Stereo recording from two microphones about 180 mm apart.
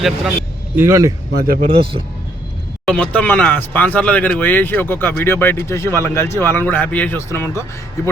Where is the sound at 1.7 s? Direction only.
30° right (ahead or behind).